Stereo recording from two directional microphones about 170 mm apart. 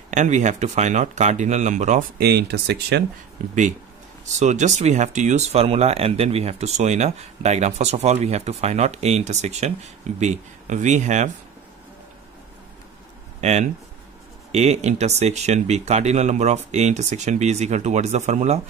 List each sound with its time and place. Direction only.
0.1 s speech: 45° right (ahead or behind)
2.1 s speech: 70° right (ahead or behind)
4.4 s speech: 45° right (ahead or behind)
13.4 s speech: 40° right (ahead or behind)